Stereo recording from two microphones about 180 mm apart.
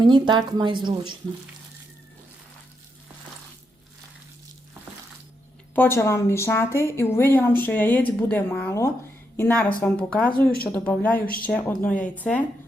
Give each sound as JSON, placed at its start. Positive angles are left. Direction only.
{"t": 0.0, "sound": "speech", "side_deg": -25}
{"t": 5.7, "sound": "speech", "side_deg": 10}